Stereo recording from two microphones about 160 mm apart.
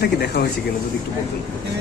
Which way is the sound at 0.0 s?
80° left.